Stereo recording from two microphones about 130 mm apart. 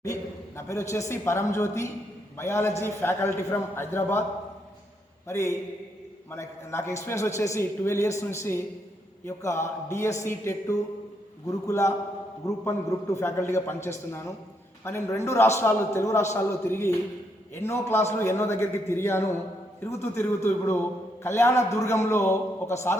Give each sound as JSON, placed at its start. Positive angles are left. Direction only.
{"t": 0.0, "sound": "a man's voice", "side_deg": 25}
{"t": 5.3, "sound": "a man's voice", "side_deg": 20}